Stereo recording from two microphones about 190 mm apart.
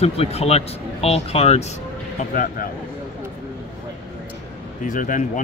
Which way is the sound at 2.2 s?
45° left (ahead or behind).